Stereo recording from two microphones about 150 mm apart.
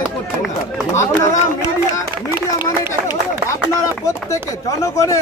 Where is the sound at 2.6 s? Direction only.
25° left (ahead or behind).